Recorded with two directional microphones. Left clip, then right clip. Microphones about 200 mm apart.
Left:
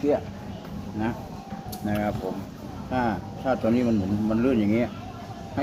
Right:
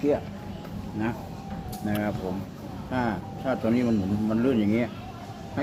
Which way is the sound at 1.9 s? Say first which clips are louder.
Left 2 dB; 15° right (ahead or behind).